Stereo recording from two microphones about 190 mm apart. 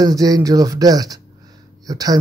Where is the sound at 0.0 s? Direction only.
20° right (ahead or behind).